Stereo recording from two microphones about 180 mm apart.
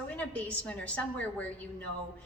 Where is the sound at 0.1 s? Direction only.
5° left (ahead or behind).